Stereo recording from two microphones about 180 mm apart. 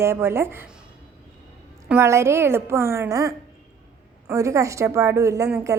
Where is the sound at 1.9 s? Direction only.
15° right (ahead or behind).